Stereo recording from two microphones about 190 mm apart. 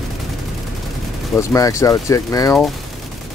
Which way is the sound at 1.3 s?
15° left (ahead or behind).